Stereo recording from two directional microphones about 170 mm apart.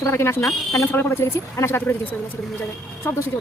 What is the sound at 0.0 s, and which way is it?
Speech, 15° left (ahead or behind).